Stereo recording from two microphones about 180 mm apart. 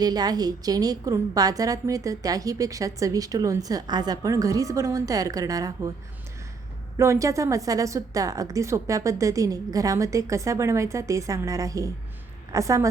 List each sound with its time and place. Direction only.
0.0 s a woman's voice: 20° right (ahead or behind)
6.9 s a woman's voice: 15° right (ahead or behind)